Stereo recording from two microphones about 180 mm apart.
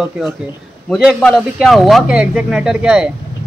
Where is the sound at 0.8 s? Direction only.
5° left (ahead or behind).